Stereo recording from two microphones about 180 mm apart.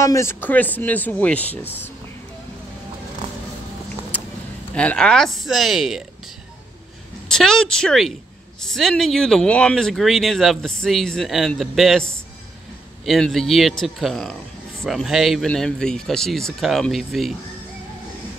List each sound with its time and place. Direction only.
0.0 s speech: 15° left (ahead or behind)
4.7 s speech: 5° left (ahead or behind)
7.2 s speech: 5° left (ahead or behind)